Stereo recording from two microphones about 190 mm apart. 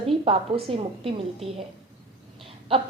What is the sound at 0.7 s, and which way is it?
Speech, 30° right (ahead or behind).